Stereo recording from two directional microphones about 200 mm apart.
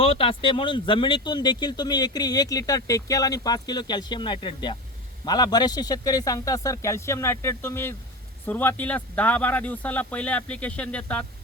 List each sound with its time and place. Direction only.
0.0 s speech: 30° left (ahead or behind); by 11.3 s 5° left (ahead or behind)